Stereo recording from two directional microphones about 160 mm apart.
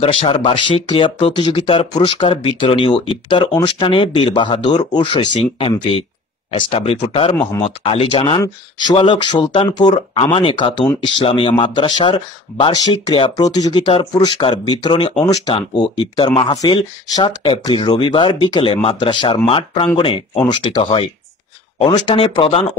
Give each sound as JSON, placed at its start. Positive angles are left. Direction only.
{"t": 0.0, "sound": "speech", "side_deg": 35}